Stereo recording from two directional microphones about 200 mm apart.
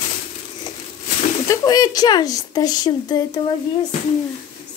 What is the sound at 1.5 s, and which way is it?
Speech, 20° left (ahead or behind).